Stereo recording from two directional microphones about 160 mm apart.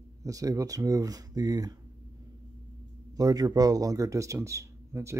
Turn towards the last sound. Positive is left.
turn(degrees=-15)  # may be behind; listen again after turning